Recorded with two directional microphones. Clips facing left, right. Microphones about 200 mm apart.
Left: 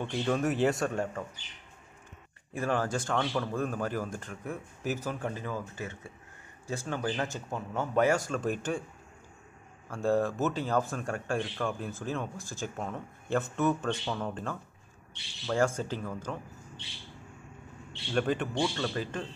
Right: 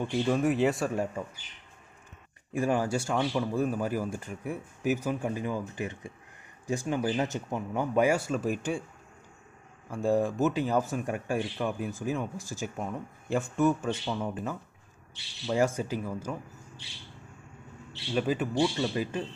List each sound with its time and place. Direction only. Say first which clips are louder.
0.0 s speech: right 3 dB; 10° right (ahead or behind)
2.5 s a man's voice: right 3 dB; 15° right (ahead or behind)
9.8 s a man's voice: right 1 dB; 15° right (ahead or behind)
18.1 s a man's voice: right 1 dB; 5° right (ahead or behind)